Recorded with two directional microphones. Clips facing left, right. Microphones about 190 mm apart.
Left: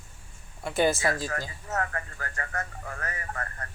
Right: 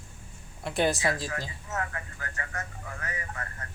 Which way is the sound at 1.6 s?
45° left (ahead or behind).